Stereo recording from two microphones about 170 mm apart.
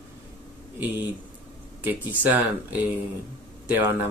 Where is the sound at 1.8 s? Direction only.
10° right (ahead or behind).